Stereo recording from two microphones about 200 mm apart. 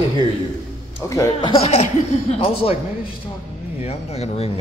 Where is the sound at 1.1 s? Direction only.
15° left (ahead or behind).